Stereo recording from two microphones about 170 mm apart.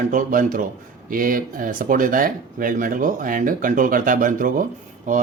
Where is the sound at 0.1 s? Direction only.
50° right (ahead or behind).